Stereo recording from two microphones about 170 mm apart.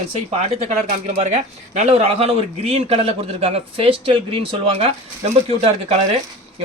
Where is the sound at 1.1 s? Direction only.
40° right (ahead or behind).